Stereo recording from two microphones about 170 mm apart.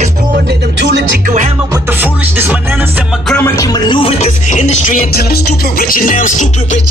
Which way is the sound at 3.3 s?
15° left (ahead or behind).